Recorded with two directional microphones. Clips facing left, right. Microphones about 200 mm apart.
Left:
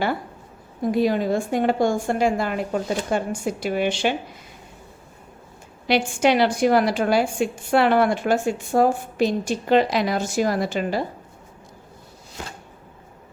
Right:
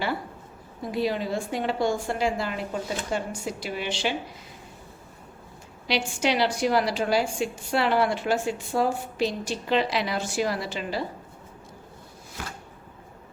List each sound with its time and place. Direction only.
0.9 s a woman's voice: 50° left (ahead or behind)
5.9 s a woman's voice: 55° left (ahead or behind)